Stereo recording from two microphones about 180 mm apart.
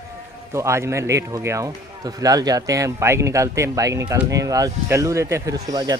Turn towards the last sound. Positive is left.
turn(degrees=-20)  # may be behind; listen again after turning